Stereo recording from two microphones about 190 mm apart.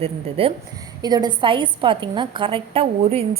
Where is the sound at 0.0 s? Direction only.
30° right (ahead or behind).